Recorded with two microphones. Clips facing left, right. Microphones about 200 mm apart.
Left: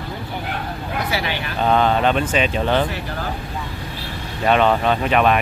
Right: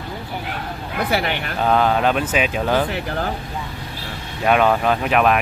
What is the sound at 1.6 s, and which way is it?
Speech, 5° right (ahead or behind).